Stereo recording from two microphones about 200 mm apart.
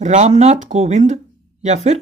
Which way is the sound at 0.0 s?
35° right (ahead or behind).